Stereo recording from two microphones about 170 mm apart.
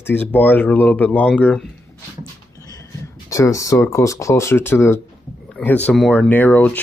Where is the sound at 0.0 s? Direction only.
10° left (ahead or behind).